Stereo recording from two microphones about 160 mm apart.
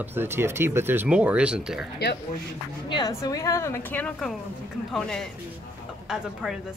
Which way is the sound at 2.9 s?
25° left (ahead or behind).